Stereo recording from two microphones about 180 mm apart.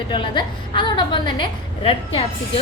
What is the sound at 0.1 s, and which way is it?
A woman's voice, 25° left (ahead or behind).